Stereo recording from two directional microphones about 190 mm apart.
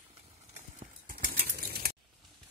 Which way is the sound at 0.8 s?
45° right (ahead or behind).